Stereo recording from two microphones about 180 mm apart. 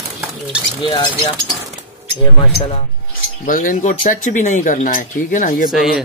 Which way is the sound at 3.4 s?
50° left (ahead or behind).